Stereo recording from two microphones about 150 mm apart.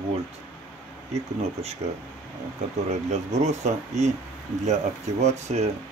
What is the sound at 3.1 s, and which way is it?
Speech, 50° right (ahead or behind).